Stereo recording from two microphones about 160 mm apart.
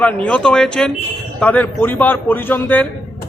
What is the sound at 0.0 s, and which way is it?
A man's voice, 5° left (ahead or behind).